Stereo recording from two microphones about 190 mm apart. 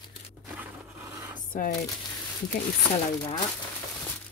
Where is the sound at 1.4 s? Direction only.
45° left (ahead or behind).